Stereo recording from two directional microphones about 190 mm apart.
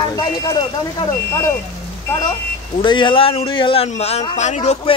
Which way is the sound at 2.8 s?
25° left (ahead or behind).